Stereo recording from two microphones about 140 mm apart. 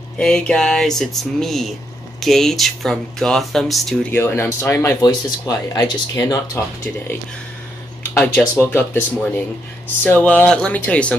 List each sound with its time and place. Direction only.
0.2 s speech: 5° left (ahead or behind)
4.1 s speech: 15° left (ahead or behind)
10.0 s speech: 10° left (ahead or behind)